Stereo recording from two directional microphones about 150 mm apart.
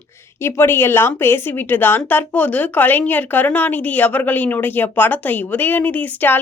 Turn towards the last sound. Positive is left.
turn(degrees=10)  # may be behind; listen again after turning